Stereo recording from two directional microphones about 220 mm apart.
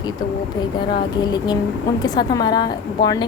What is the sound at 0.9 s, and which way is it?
A woman's voice, 20° left (ahead or behind).